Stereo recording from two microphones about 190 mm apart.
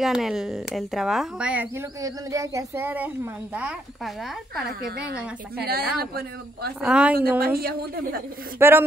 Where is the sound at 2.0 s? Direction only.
15° right (ahead or behind).